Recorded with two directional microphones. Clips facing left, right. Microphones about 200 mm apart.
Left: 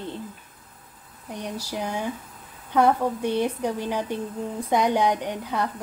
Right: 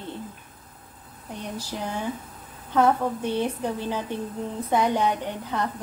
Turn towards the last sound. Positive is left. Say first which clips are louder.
# left 1 dB
turn(degrees=10)  # may be behind; listen again after turning